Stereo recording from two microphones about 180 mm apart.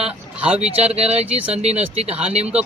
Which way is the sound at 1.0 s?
35° right (ahead or behind).